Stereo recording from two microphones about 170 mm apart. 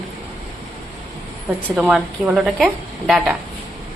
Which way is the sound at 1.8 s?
5° right (ahead or behind).